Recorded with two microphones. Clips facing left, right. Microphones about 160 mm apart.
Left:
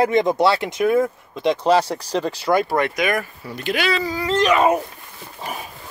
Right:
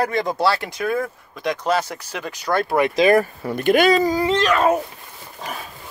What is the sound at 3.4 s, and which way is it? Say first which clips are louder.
Speech: right 6 dB; 50° right (ahead or behind).